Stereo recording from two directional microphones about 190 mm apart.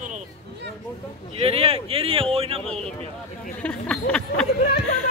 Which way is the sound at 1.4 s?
30° right (ahead or behind).